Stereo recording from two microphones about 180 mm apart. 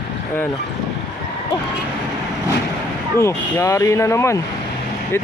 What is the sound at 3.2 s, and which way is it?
Speech, 15° left (ahead or behind).